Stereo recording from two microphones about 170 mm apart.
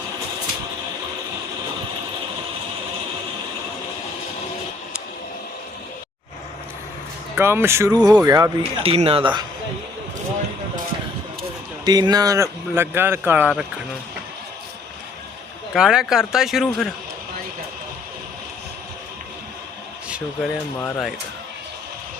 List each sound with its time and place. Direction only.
7.3 s speech: 15° right (ahead or behind)
8.8 s speech: 35° right (ahead or behind)
11.9 s speech: 25° right (ahead or behind)
15.7 s speech: 5° right (ahead or behind)
20.1 s speech: 5° right (ahead or behind)
20.7 s speech: 15° left (ahead or behind)